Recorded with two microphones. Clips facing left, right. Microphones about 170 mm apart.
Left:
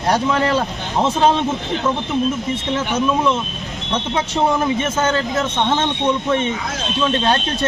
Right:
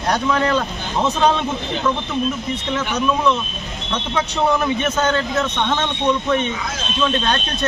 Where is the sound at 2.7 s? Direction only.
25° left (ahead or behind).